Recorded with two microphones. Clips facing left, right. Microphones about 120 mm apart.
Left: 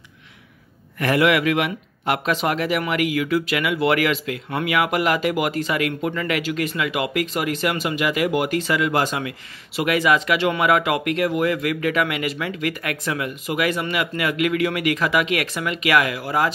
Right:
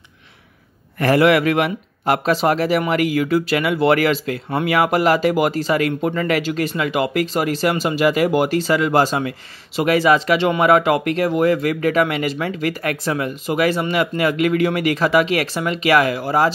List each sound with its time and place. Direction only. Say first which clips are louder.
0.9 s speech: right 4 dB; 35° right (ahead or behind)